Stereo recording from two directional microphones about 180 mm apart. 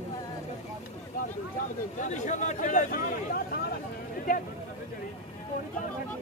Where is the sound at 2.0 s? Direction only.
45° left (ahead or behind).